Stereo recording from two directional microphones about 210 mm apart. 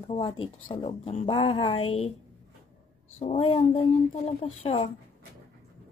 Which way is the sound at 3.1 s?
30° left (ahead or behind).